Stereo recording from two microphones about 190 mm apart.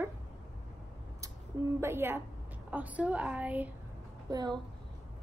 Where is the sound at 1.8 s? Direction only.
10° right (ahead or behind).